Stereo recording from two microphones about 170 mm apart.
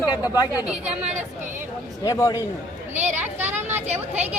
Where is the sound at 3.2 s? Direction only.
10° right (ahead or behind).